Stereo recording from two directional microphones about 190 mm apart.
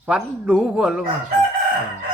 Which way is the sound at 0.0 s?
5° right (ahead or behind).